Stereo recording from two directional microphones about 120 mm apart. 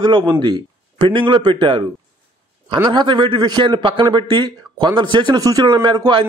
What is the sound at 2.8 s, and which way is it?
A man's voice, 40° right (ahead or behind).